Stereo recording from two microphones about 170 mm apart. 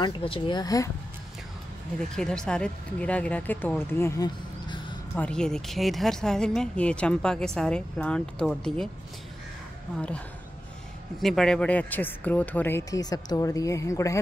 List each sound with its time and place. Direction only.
0.0 s speech: 30° left (ahead or behind)
2.0 s speech: 5° left (ahead or behind)
4.0 s a sound: 20° left (ahead or behind)
5.1 s a woman's voice: 5° left (ahead or behind)
9.9 s speech: 5° left (ahead or behind)